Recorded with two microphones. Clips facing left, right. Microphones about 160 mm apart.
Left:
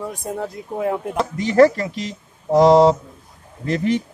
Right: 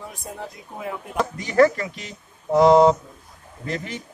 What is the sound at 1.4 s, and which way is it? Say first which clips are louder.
A man's voice: left 4 dB; 35° left (ahead or behind).